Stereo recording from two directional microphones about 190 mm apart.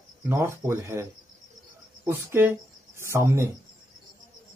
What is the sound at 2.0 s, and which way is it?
Speech, 10° right (ahead or behind).